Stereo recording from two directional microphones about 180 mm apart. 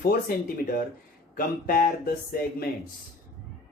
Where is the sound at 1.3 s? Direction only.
50° left (ahead or behind).